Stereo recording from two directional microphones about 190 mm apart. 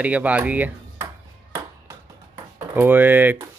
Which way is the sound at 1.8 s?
15° right (ahead or behind).